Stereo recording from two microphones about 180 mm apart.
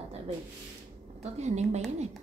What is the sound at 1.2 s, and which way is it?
Speech, 40° right (ahead or behind).